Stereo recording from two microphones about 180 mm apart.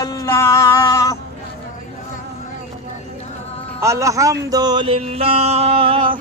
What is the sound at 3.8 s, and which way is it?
Music, 15° right (ahead or behind).